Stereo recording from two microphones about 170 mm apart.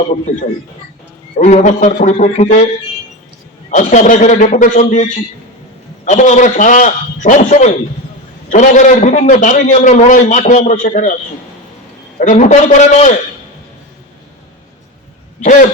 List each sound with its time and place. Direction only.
0.3 s a man's voice: 45° left (ahead or behind)
3.7 s a man's voice: 45° left (ahead or behind)
6.1 s a man's voice: 45° left (ahead or behind)
12.2 s a man's voice: 45° left (ahead or behind)